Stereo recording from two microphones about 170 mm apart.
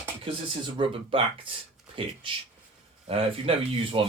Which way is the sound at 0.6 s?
30° right (ahead or behind).